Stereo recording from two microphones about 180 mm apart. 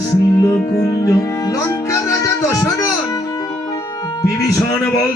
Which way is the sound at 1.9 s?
15° left (ahead or behind).